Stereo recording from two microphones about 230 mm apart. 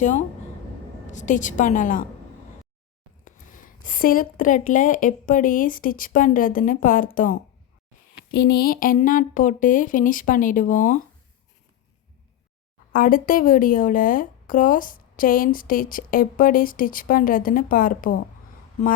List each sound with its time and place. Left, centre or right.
0.0 s speech: left
3.2 s speech: left
12.9 s speech: left